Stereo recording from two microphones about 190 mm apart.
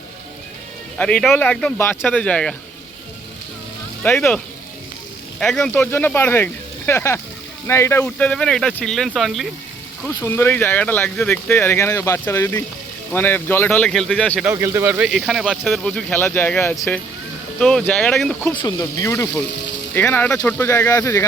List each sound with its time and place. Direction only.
0.9 s speech: 5° left (ahead or behind)
4.0 s speech: 5° left (ahead or behind)
5.4 s speech: 5° left (ahead or behind)
10.2 s speech: 10° left (ahead or behind)
14.4 s speech: 15° right (ahead or behind); by 17.0 s 15° left (ahead or behind)
17.6 s speech: 5° left (ahead or behind)
18.5 s speech: 20° left (ahead or behind)